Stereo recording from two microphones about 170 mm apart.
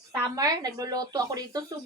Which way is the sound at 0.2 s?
20° right (ahead or behind).